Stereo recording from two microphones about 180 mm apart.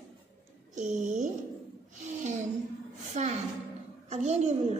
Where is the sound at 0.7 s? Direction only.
40° right (ahead or behind).